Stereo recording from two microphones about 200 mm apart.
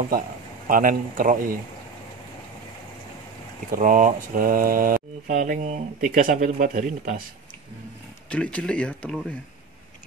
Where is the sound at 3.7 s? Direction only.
40° right (ahead or behind).